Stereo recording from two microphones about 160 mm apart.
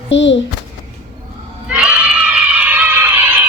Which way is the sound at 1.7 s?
5° right (ahead or behind).